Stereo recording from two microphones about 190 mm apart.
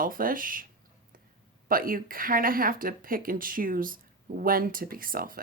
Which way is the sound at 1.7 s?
50° right (ahead or behind).